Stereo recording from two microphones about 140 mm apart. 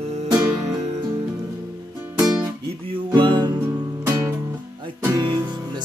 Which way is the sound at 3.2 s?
35° right (ahead or behind).